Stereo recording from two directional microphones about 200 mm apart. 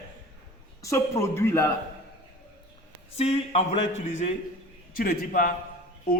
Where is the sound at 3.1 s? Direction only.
30° left (ahead or behind).